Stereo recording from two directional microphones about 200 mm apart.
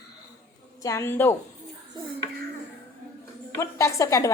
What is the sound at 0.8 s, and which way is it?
Speech, 15° left (ahead or behind).